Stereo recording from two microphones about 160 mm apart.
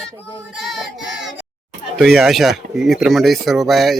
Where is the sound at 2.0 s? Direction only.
Centre (ahead or behind).